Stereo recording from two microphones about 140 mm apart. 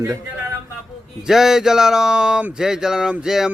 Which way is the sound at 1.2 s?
5° right (ahead or behind).